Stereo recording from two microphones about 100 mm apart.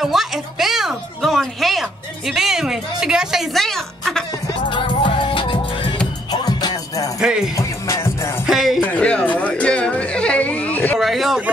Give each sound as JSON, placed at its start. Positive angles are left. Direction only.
{"t": 0.0, "sound": "music", "side_deg": -5}
{"t": 4.6, "sound": "music", "side_deg": 55}
{"t": 6.4, "sound": "music", "side_deg": 40}
{"t": 7.2, "sound": "music", "side_deg": -5}
{"t": 7.5, "sound": "music", "side_deg": 25}
{"t": 8.5, "sound": "music", "side_deg": -5}
{"t": 8.8, "sound": "a sound", "side_deg": 15}
{"t": 11.0, "sound": "a sound", "side_deg": 0}